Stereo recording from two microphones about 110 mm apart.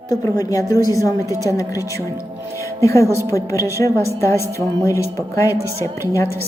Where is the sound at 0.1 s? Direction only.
30° left (ahead or behind).